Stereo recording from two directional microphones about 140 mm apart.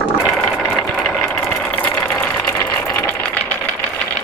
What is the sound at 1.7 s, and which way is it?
Vehicle, 15° left (ahead or behind).